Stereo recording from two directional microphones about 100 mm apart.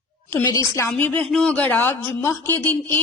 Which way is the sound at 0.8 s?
15° left (ahead or behind).